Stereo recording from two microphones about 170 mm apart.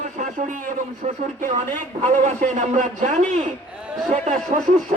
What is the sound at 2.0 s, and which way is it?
Speech, 45° right (ahead or behind).